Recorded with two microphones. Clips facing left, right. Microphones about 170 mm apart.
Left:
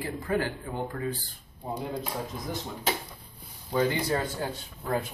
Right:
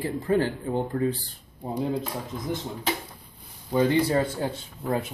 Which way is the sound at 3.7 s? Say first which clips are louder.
Right 5 dB; 25° right (ahead or behind).